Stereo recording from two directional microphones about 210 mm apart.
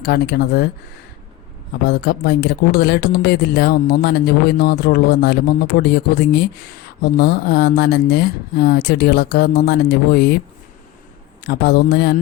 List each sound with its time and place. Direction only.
0.0 s speech: 50° left (ahead or behind)
1.9 s speech: 50° left (ahead or behind)
11.4 s speech: 50° left (ahead or behind)